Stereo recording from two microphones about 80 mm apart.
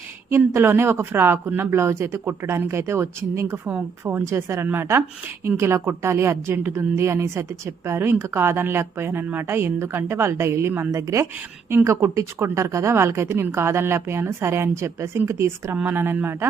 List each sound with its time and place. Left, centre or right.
0.3 s a woman's voice: right
15.7 s speech: right